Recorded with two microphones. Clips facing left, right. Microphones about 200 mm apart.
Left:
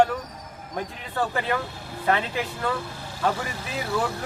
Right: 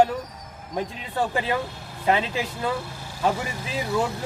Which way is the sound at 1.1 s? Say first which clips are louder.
Right 1 dB; 10° right (ahead or behind).